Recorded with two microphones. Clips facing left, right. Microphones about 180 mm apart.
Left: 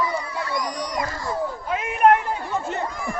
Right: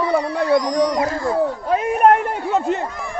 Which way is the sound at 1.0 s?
55° right (ahead or behind).